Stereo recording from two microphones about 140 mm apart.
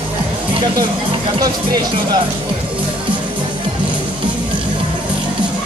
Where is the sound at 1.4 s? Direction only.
30° right (ahead or behind).